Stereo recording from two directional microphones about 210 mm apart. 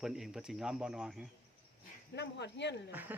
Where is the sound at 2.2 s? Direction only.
55° left (ahead or behind).